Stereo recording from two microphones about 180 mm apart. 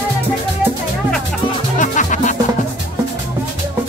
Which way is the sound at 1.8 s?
45° left (ahead or behind).